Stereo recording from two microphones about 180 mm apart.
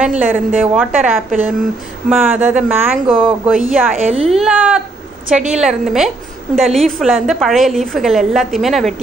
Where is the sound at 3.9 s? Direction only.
35° right (ahead or behind).